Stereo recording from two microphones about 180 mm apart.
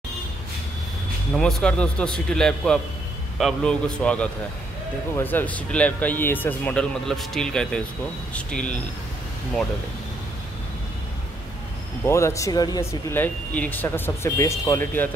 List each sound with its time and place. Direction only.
1.4 s a man's voice: 5° left (ahead or behind)
12.0 s speech: 15° left (ahead or behind)
13.2 s speech: 10° left (ahead or behind)